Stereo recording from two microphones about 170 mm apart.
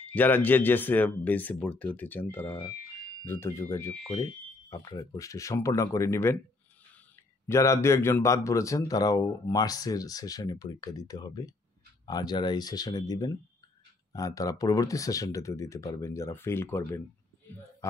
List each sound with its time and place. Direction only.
0.0 s speech: 10° left (ahead or behind)
7.4 s speech: 20° left (ahead or behind)